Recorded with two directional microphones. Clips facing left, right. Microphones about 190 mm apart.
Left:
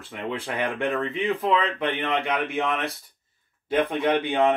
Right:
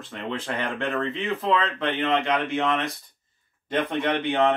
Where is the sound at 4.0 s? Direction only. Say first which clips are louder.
Left 2 dB; 15° left (ahead or behind).